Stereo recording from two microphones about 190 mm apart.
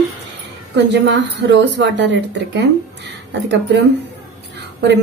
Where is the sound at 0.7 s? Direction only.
65° right (ahead or behind).